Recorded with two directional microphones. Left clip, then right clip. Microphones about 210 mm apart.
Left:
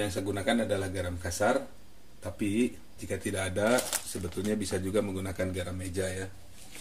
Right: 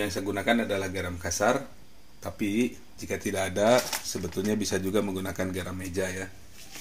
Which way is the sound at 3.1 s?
25° right (ahead or behind).